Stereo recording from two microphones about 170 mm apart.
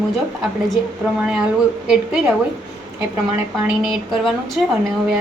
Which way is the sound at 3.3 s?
10° right (ahead or behind).